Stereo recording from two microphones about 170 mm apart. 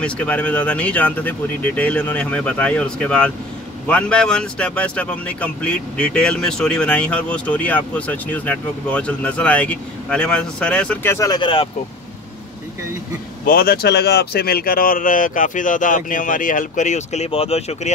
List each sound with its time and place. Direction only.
0.0 s speech: 5° left (ahead or behind); by 11.7 s 30° left (ahead or behind)
13.5 s speech: 60° left (ahead or behind); by 17.9 s 40° left (ahead or behind)